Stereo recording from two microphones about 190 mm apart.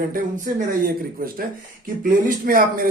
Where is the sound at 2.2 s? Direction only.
50° right (ahead or behind).